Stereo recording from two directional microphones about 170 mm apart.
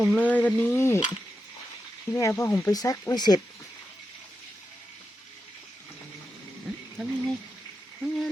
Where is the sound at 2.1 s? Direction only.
20° left (ahead or behind).